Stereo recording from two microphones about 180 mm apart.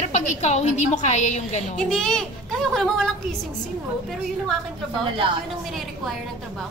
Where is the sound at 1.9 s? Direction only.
5° left (ahead or behind).